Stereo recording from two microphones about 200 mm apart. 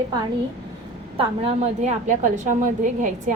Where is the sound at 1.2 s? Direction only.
30° right (ahead or behind).